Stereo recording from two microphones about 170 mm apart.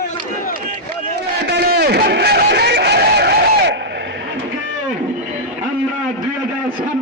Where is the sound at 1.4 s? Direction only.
75° right (ahead or behind).